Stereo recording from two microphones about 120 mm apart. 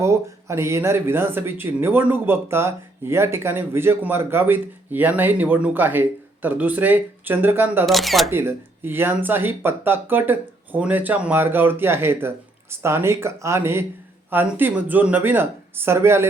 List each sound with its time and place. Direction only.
0.0 s speech: 25° right (ahead or behind)
7.9 s speech: centre (ahead or behind)
8.3 s speech: 20° right (ahead or behind)